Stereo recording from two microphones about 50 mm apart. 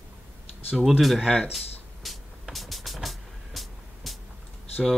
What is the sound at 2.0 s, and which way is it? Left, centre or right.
Vehicle, centre.